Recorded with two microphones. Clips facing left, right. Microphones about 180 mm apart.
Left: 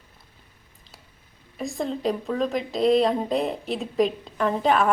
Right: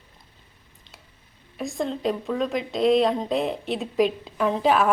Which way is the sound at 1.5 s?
Centre (ahead or behind).